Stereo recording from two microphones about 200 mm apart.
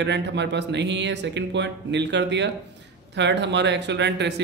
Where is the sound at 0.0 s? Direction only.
60° right (ahead or behind).